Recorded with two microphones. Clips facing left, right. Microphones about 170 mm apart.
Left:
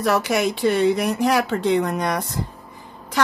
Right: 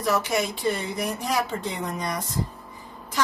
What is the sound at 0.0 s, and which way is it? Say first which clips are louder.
Speech: left 5 dB; 70° left (ahead or behind).